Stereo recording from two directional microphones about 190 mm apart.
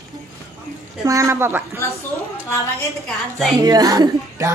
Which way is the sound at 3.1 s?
Centre (ahead or behind).